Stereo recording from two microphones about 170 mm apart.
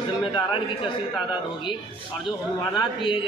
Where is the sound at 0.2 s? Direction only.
30° left (ahead or behind).